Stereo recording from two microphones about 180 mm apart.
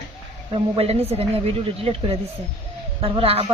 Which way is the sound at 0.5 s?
35° right (ahead or behind).